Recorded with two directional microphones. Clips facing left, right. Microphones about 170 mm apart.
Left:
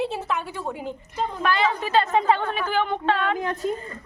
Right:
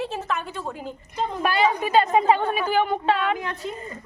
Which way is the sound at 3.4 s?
45° left (ahead or behind).